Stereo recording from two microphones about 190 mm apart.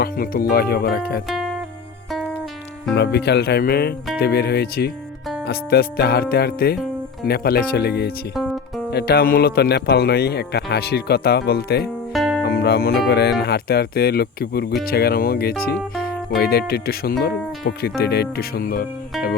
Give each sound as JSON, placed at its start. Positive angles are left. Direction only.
{"t": 0.0, "sound": "speech", "side_deg": 55}
{"t": 2.9, "sound": "speech", "side_deg": 60}
{"t": 12.1, "sound": "music", "side_deg": 0}
{"t": 12.4, "sound": "speech", "side_deg": 55}